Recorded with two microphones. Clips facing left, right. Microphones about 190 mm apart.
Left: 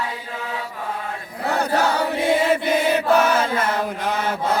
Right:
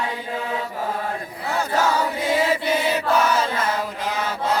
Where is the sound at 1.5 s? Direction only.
60° left (ahead or behind).